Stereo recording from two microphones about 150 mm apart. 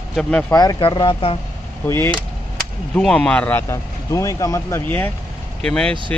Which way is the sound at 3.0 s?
5° left (ahead or behind).